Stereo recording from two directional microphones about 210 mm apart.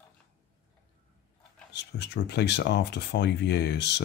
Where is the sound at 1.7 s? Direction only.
55° left (ahead or behind).